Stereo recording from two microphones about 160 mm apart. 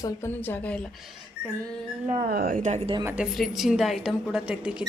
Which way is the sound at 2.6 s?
45° right (ahead or behind).